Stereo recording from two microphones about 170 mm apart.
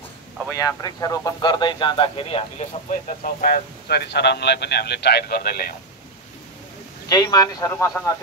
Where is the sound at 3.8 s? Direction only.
80° left; by 5.7 s 65° left (ahead or behind).